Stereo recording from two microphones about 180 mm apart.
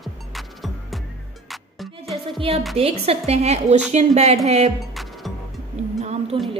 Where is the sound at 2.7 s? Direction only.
35° right (ahead or behind).